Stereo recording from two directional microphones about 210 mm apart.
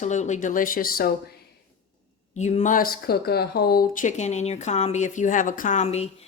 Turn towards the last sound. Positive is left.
turn(degrees=30)  # may be behind; listen again after turning